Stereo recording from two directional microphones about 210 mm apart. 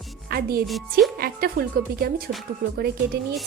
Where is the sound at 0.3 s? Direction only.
45° right (ahead or behind).